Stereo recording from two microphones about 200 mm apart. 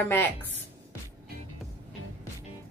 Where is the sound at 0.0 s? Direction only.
10° left (ahead or behind).